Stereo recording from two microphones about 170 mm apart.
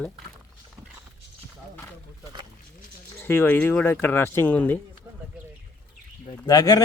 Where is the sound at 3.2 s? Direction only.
15° left (ahead or behind).